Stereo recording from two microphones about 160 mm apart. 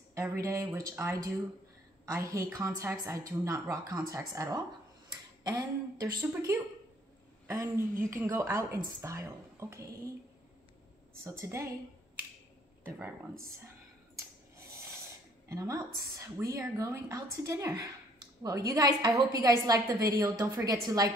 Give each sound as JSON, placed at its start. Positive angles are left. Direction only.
{"t": 0.1, "sound": "a woman's voice", "side_deg": -15}
{"t": 11.2, "sound": "speech", "side_deg": -15}
{"t": 15.4, "sound": "a woman's voice", "side_deg": -20}